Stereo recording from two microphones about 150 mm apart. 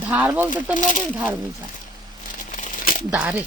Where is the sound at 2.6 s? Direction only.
65° left (ahead or behind).